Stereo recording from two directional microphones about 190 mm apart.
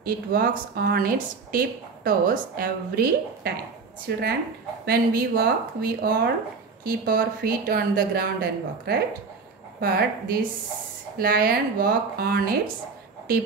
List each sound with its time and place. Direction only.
0.0 s a woman's voice: 50° right (ahead or behind)